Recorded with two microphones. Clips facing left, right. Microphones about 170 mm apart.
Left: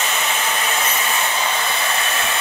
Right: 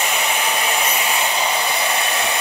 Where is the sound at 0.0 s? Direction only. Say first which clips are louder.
Right 1 dB; 15° right (ahead or behind).